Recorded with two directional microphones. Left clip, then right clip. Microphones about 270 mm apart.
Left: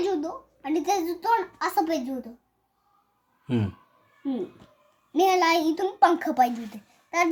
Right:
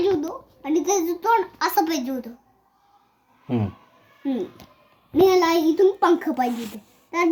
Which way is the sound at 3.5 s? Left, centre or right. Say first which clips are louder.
Right 2 dB; left.